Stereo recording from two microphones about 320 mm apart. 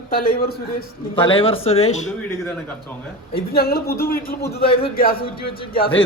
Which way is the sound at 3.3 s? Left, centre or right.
Left.